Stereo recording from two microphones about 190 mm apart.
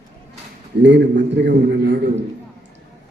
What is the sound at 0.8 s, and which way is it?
A man's voice, 70° right (ahead or behind).